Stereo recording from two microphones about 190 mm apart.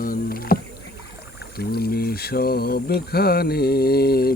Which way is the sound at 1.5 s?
55° left (ahead or behind).